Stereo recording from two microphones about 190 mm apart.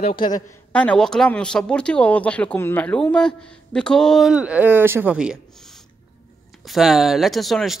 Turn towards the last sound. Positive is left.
turn(degrees=0)  # may be behind; listen again after turning